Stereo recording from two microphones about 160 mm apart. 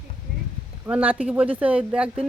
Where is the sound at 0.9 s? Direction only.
10° right (ahead or behind).